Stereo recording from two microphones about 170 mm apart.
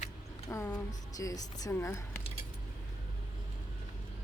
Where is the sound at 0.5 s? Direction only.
15° left (ahead or behind).